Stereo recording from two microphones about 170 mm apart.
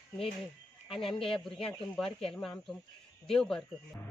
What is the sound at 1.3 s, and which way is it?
Speech, 5° left (ahead or behind).